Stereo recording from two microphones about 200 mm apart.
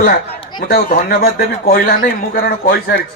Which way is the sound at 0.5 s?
45° left (ahead or behind).